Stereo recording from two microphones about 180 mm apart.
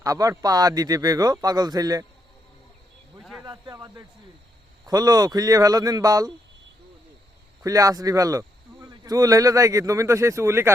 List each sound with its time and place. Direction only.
0.0 s speech: 20° right (ahead or behind)
3.4 s speech: 20° right (ahead or behind)
7.6 s speech: 20° right (ahead or behind)